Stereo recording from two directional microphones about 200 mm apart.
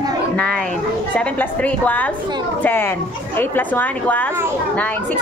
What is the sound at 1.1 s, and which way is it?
A woman's voice, 5° left (ahead or behind).